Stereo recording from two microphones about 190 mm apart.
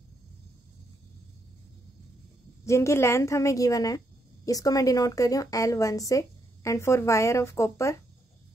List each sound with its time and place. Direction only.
2.6 s a woman's voice: 15° left (ahead or behind)